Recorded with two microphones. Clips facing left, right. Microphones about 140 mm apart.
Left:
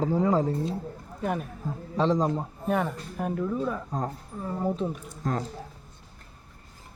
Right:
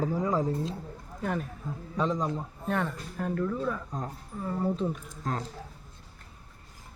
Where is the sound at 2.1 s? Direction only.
35° left (ahead or behind).